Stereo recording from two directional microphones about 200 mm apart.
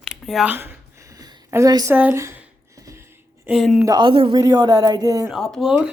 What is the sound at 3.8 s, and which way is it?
Speech, 20° right (ahead or behind).